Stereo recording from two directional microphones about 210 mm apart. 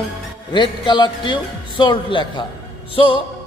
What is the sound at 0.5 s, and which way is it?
A man's voice, 20° left (ahead or behind).